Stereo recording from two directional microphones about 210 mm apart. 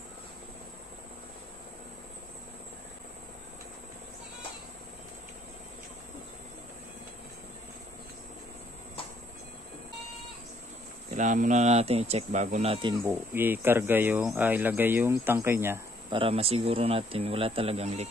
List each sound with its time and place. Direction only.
11.1 s speech: 35° right (ahead or behind)
13.0 s speech: 10° right (ahead or behind)
16.1 s speech: 25° right (ahead or behind)